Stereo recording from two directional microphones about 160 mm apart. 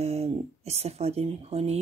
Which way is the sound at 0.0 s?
40° right (ahead or behind).